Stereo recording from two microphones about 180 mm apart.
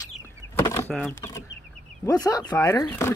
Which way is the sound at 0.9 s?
15° left (ahead or behind).